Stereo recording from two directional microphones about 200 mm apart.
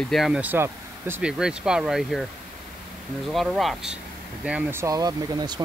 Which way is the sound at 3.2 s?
Centre (ahead or behind).